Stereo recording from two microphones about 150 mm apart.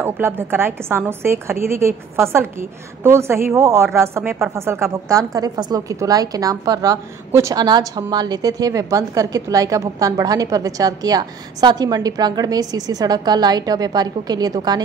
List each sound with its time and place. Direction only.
0.0 s a woman's voice: 15° right (ahead or behind)